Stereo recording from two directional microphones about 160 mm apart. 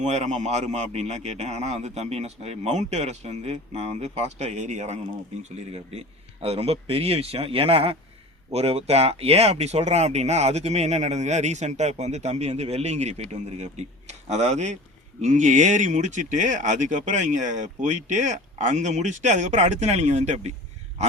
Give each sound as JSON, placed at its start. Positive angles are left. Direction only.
{"t": 0.0, "sound": "a man's voice", "side_deg": -45}